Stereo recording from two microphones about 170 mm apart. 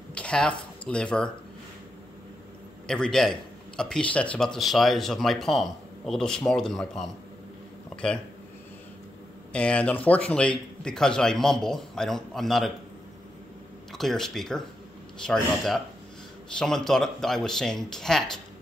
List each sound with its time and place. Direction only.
0.1 s speech: 5° left (ahead or behind)
2.9 s speech: 5° left (ahead or behind)
7.9 s a sound: 5° left (ahead or behind)
9.5 s speech: 5° left (ahead or behind)
13.9 s speech: centre (ahead or behind)